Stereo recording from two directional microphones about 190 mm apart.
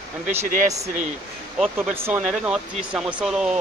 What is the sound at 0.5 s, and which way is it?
Speech, 45° right (ahead or behind).